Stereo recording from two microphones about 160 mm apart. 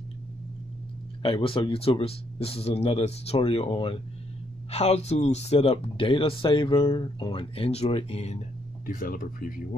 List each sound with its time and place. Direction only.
1.2 s speech: 35° left (ahead or behind)
9.0 s speech: 60° left (ahead or behind)